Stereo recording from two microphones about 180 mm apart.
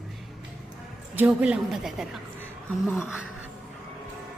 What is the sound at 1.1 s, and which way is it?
Speech, 5° right (ahead or behind).